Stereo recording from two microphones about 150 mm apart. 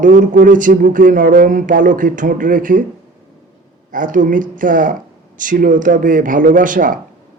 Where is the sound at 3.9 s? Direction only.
60° right (ahead or behind).